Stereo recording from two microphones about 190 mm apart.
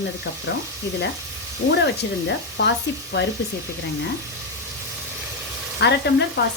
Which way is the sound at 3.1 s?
65° left (ahead or behind).